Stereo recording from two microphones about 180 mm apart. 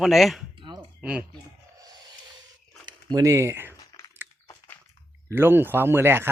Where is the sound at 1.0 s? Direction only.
5° right (ahead or behind).